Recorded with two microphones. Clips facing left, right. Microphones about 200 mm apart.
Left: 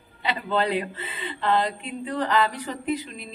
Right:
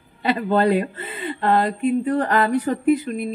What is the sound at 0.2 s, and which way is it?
Speech, 50° right (ahead or behind).